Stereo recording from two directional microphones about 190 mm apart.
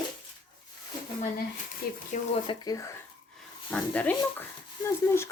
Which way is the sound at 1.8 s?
55° left (ahead or behind).